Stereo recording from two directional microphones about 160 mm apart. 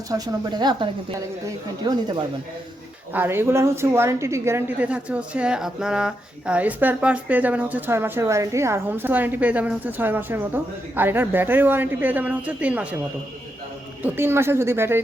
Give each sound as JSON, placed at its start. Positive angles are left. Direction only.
{"t": 0.1, "sound": "speech", "side_deg": -25}
{"t": 3.1, "sound": "a woman's voice", "side_deg": -15}
{"t": 14.0, "sound": "a woman's voice", "side_deg": -15}